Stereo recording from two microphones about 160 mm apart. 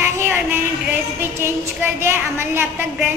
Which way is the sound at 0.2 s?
15° right (ahead or behind).